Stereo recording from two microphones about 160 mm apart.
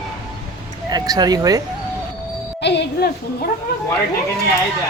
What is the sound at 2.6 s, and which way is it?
Music, 90° left.